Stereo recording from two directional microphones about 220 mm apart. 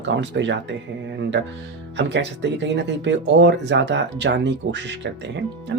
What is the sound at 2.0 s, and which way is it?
Speech, 50° right (ahead or behind).